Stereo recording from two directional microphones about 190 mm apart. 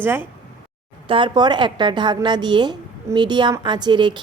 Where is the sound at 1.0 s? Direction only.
25° right (ahead or behind).